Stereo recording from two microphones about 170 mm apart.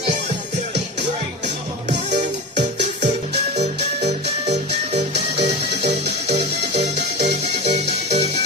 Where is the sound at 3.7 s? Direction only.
75° right (ahead or behind).